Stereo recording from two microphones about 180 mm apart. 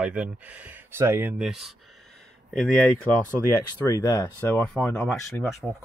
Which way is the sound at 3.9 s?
20° left (ahead or behind).